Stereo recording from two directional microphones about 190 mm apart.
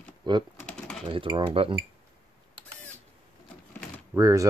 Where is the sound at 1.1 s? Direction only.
25° right (ahead or behind).